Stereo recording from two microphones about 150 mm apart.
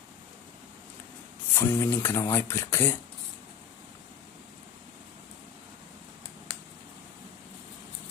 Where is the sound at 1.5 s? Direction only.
15° left (ahead or behind).